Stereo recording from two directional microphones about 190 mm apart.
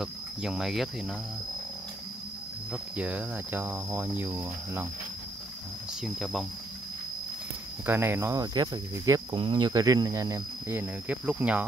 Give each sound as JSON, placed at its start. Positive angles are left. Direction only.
{"t": 0.0, "sound": "speech", "side_deg": 0}
{"t": 2.7, "sound": "speech", "side_deg": -5}
{"t": 6.0, "sound": "speech", "side_deg": 0}
{"t": 7.8, "sound": "speech", "side_deg": -10}